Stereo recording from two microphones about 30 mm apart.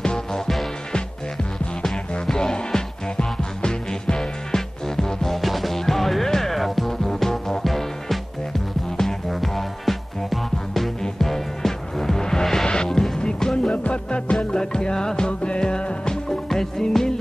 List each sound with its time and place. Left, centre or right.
0.0 s music: left
1.8 s music: left
5.4 s music: centre
6.5 s music: centre; by 13.7 s left
13.8 s music: left
14.5 s music: left
16.4 s music: centre